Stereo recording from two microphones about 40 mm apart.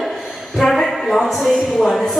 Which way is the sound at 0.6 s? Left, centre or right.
Centre.